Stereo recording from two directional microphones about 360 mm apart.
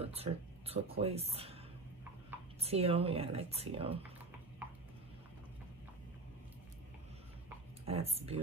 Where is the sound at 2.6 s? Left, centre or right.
Centre.